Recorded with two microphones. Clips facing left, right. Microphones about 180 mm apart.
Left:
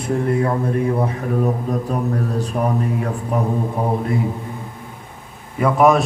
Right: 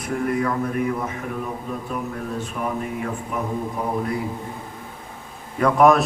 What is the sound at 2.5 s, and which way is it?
Speech, 45° left (ahead or behind).